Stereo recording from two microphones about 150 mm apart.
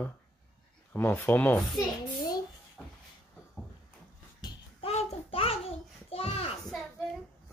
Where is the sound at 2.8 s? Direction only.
5° left (ahead or behind).